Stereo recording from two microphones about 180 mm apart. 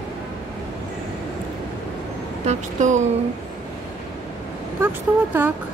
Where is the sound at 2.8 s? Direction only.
40° right (ahead or behind).